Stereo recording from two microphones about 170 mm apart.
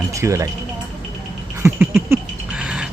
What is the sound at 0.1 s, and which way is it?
Speech, 15° right (ahead or behind).